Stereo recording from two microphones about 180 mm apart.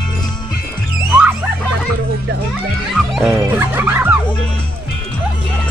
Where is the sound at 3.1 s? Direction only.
5° right (ahead or behind).